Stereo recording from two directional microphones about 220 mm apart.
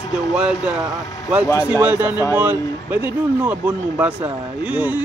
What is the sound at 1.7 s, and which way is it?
Speech, 10° right (ahead or behind).